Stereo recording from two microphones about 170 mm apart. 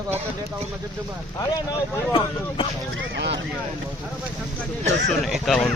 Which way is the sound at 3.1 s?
90° right.